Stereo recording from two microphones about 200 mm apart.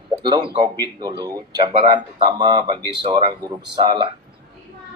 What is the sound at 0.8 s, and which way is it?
Speech, 20° right (ahead or behind).